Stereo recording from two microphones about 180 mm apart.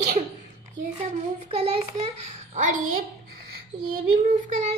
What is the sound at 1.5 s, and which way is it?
Speech, 35° right (ahead or behind).